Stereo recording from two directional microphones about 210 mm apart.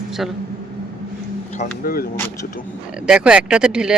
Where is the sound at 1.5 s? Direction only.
40° left (ahead or behind).